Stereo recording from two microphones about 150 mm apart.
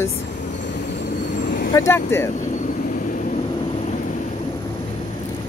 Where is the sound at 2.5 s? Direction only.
60° left (ahead or behind).